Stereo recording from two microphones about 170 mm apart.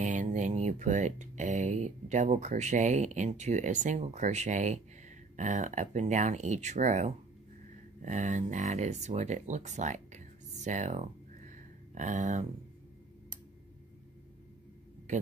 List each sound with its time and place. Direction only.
0.0 s speech: 45° right (ahead or behind)
15.1 s speech: 45° right (ahead or behind)